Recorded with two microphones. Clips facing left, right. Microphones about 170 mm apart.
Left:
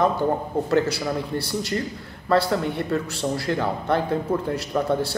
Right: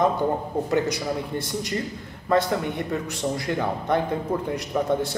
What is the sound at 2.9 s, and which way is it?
A man's voice, 15° right (ahead or behind).